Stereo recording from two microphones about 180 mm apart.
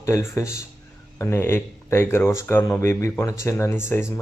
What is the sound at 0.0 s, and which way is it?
Speech, 15° left (ahead or behind).